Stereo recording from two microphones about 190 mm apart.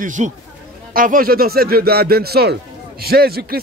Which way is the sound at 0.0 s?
40° right (ahead or behind).